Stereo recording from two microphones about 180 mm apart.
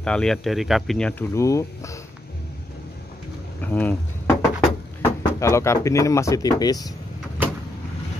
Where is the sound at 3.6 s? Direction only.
10° left (ahead or behind).